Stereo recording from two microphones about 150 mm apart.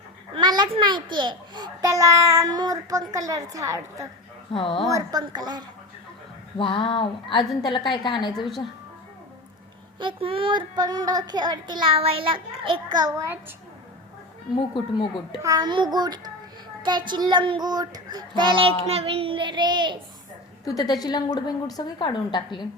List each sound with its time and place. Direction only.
0.3 s a child's voice: 30° right (ahead or behind)
4.5 s a woman's voice: 35° left (ahead or behind)
4.9 s speech: 25° right (ahead or behind)
6.6 s a woman's voice: 35° left (ahead or behind)
8.3 s a woman's voice: centre (ahead or behind)
10.0 s speech: 35° right (ahead or behind); by 13.4 s 20° right (ahead or behind)
15.4 s speech: 25° right (ahead or behind)
17.1 s child singing: 30° right (ahead or behind)
20.7 s a woman's voice: 25° left (ahead or behind)